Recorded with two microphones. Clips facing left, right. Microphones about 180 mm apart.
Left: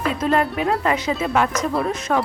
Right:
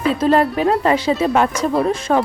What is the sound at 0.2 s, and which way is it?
Speech, 30° right (ahead or behind).